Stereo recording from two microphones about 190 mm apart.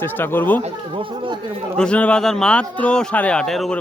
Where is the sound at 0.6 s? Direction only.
25° right (ahead or behind).